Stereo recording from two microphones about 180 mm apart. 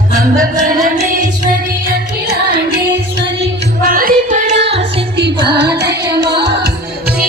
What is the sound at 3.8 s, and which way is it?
Music, 50° right (ahead or behind).